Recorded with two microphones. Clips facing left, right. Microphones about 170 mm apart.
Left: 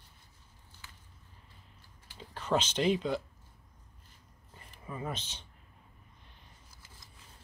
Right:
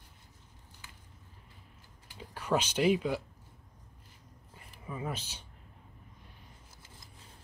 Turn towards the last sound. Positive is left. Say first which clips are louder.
# right 1 dB
turn(degrees=-10)  # may be behind; listen again after turning